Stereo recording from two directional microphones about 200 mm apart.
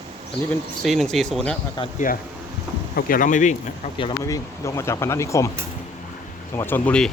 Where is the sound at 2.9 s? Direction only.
45° left (ahead or behind).